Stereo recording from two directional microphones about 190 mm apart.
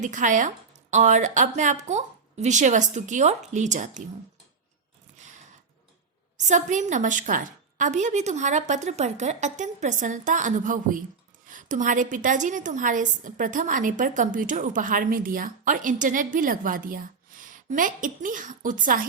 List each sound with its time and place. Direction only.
0.0 s a woman's voice: 40° right (ahead or behind)
6.4 s a woman's voice: 40° right (ahead or behind)